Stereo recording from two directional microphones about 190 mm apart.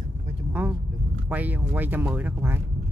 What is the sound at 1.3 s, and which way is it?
Speech, 10° right (ahead or behind).